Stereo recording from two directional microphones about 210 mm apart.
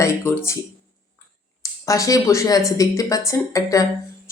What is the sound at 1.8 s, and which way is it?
Speech, 15° left (ahead or behind).